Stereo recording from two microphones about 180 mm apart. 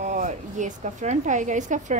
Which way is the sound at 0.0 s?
45° right (ahead or behind).